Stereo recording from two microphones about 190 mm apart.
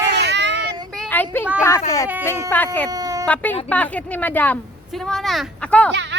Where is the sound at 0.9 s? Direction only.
5° left (ahead or behind).